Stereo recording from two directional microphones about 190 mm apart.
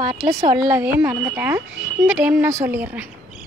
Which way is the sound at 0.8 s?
10° right (ahead or behind).